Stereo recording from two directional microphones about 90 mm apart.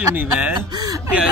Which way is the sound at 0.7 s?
50° right (ahead or behind).